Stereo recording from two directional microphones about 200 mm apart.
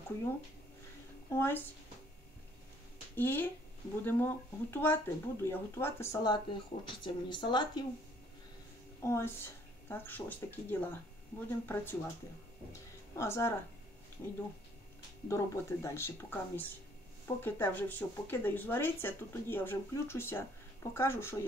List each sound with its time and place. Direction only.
1.3 s speech: 10° left (ahead or behind)
3.2 s speech: 10° left (ahead or behind)
9.0 s speech: 10° left (ahead or behind)
13.1 s speech: 15° left (ahead or behind)
15.2 s speech: 15° left (ahead or behind)